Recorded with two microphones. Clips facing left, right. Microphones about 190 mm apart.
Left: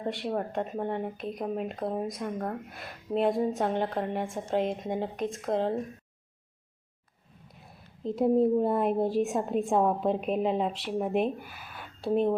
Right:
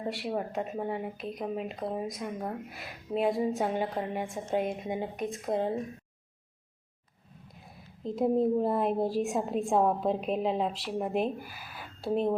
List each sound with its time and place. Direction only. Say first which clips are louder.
0.0 s a woman's voice: left 2 dB; 5° right (ahead or behind)
7.5 s a woman's voice: even; centre (ahead or behind)